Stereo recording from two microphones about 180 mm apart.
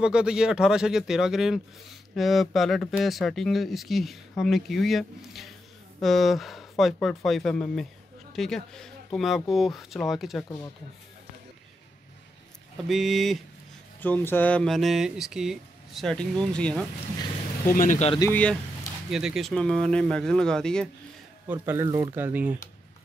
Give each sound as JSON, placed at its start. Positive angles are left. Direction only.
{"t": 0.0, "sound": "speech", "side_deg": -5}
{"t": 12.8, "sound": "speech", "side_deg": 0}
{"t": 14.0, "sound": "speech", "side_deg": 10}
{"t": 17.7, "sound": "speech", "side_deg": 45}
{"t": 18.2, "sound": "speech", "side_deg": 10}
{"t": 19.0, "sound": "speech", "side_deg": 0}
{"t": 21.5, "sound": "speech", "side_deg": -10}